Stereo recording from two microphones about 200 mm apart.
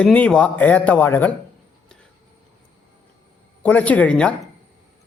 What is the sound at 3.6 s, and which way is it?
Speech, 5° left (ahead or behind).